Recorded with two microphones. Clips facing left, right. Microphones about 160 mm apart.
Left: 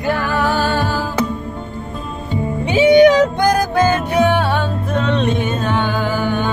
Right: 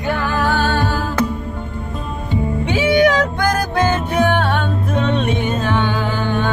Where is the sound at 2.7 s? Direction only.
15° left (ahead or behind).